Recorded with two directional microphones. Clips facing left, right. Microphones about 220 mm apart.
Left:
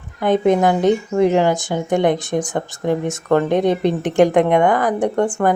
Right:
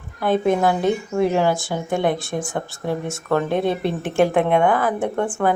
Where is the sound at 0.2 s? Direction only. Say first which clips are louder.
Left 3 dB; 20° left (ahead or behind).